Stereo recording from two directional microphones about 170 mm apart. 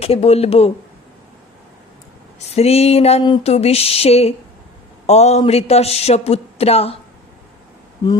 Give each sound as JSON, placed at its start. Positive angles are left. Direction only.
{"t": 0.0, "sound": "a man's voice", "side_deg": 35}
{"t": 2.6, "sound": "a man's voice", "side_deg": 35}